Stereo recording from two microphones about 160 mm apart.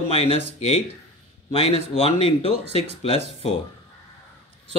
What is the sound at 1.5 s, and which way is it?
Speech, 40° left (ahead or behind).